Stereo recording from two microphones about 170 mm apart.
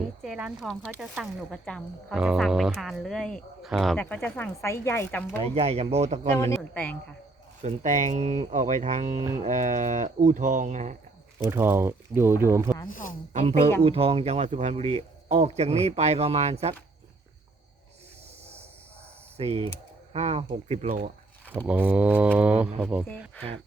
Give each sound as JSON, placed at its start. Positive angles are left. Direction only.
{"t": 0.2, "sound": "speech", "side_deg": -5}
{"t": 5.5, "sound": "speech", "side_deg": -35}
{"t": 6.4, "sound": "speech", "side_deg": 15}
{"t": 7.6, "sound": "speech", "side_deg": -45}
{"t": 11.4, "sound": "speech", "side_deg": -15}
{"t": 12.9, "sound": "speech", "side_deg": 55}
{"t": 13.3, "sound": "speech", "side_deg": -45}
{"t": 19.4, "sound": "speech", "side_deg": -35}
{"t": 21.7, "sound": "speech", "side_deg": -10}